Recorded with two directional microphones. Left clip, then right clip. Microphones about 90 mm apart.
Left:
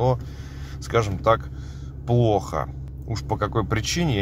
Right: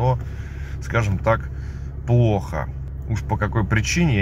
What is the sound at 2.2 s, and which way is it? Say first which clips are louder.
Speech: left 3 dB; 35° left (ahead or behind).